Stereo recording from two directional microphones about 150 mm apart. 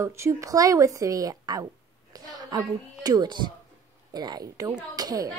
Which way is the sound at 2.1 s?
25° right (ahead or behind).